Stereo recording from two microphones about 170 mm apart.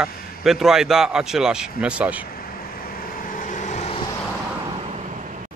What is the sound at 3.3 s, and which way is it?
Vehicle, 50° left (ahead or behind).